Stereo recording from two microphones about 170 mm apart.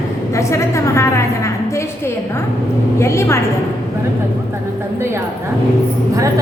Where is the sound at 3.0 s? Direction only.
15° left (ahead or behind).